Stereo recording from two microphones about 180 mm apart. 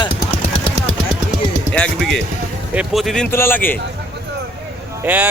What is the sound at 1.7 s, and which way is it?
Speech, 5° left (ahead or behind).